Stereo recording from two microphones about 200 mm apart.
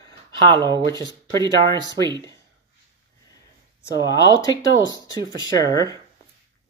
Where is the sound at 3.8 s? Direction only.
20° left (ahead or behind).